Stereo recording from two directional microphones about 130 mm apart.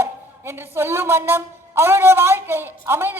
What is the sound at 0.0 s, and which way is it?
Speech, 20° right (ahead or behind).